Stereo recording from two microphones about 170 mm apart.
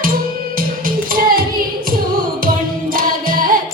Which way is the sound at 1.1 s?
60° right (ahead or behind).